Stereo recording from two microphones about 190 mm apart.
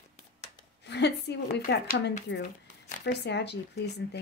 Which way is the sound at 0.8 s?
65° left (ahead or behind).